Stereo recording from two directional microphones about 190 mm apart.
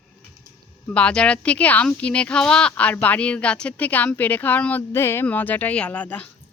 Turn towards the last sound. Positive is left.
turn(degrees=10)  # may be behind; listen again after turning